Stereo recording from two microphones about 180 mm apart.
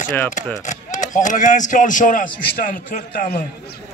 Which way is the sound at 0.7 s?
45° left (ahead or behind).